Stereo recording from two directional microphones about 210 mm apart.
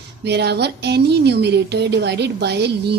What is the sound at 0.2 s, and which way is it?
Speech, 55° right (ahead or behind).